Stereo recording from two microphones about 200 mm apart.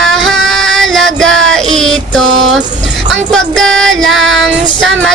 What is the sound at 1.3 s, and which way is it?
Child singing, 75° right (ahead or behind).